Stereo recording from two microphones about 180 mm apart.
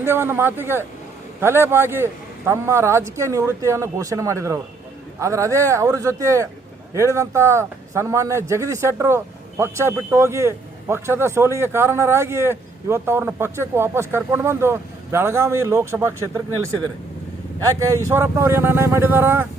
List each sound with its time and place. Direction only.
0.0 s a man's voice: 10° right (ahead or behind)
17.6 s a man's voice: 20° right (ahead or behind)